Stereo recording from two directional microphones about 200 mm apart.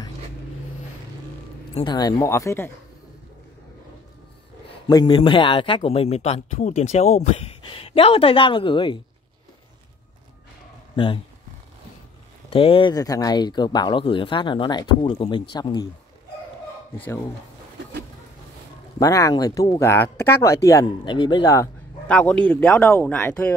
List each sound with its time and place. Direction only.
1.8 s speech: 20° left (ahead or behind)
4.8 s speech: 20° left (ahead or behind)
12.4 s speech: 25° left (ahead or behind)
18.9 s speech: 15° left (ahead or behind)